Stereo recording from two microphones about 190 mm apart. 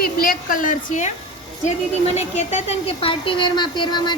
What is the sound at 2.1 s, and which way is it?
A woman's voice, 35° left (ahead or behind).